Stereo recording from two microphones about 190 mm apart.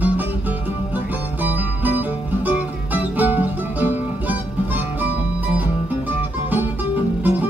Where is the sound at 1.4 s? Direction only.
10° right (ahead or behind).